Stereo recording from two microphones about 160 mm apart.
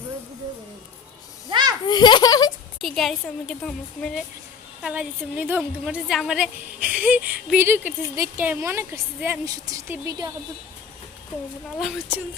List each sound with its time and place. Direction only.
1.5 s children playing: 30° right (ahead or behind)
1.9 s a child's voice: 25° left (ahead or behind)
2.8 s a woman's voice: centre (ahead or behind)
4.8 s a woman's voice: 5° right (ahead or behind); by 10.3 s 20° right (ahead or behind)
11.8 s a woman's voice: 10° right (ahead or behind)